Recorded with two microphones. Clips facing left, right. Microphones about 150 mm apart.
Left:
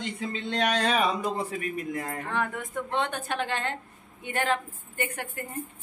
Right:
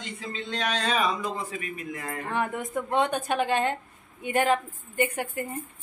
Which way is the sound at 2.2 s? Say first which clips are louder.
Right 6 dB; 15° right (ahead or behind).